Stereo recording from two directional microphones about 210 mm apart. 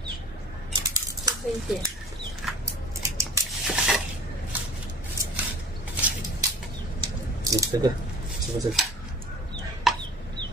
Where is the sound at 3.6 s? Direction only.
5° right (ahead or behind).